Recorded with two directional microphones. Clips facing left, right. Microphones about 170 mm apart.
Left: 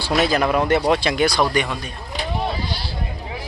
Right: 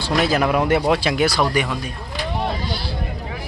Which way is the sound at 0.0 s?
5° left (ahead or behind).